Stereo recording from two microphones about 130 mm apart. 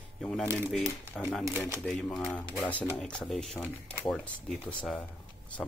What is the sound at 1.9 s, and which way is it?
Speech, 5° left (ahead or behind).